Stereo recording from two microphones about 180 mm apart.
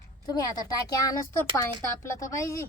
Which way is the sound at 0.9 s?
20° left (ahead or behind).